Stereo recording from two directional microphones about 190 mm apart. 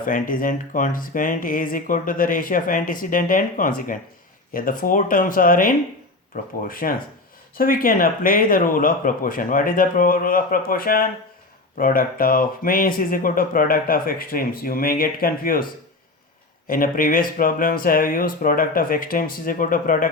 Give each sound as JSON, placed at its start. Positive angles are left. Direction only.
{"t": 0.0, "sound": "speech", "side_deg": 45}
{"t": 16.6, "sound": "speech", "side_deg": 45}